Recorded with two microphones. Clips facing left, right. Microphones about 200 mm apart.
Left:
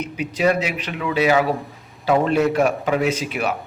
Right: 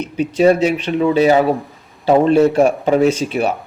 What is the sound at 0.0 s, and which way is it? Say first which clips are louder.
A man's voice: right 7 dB; 30° right (ahead or behind).